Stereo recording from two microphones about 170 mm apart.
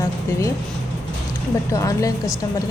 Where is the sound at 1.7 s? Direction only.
20° left (ahead or behind).